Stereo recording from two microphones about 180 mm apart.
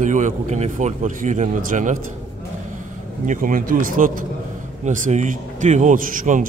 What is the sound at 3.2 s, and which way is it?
A man's voice, 50° right (ahead or behind).